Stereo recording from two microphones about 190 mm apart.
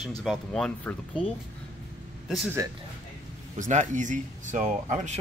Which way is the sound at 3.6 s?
40° right (ahead or behind).